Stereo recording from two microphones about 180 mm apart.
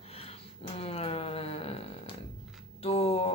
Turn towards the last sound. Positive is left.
turn(degrees=35)  # may be behind; listen again after turning